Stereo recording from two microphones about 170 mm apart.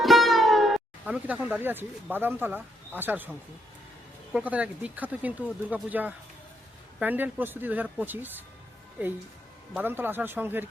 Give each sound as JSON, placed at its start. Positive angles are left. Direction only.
{"t": 0.0, "sound": "speech", "side_deg": 0}
{"t": 4.3, "sound": "speech", "side_deg": -5}
{"t": 9.7, "sound": "speech", "side_deg": -10}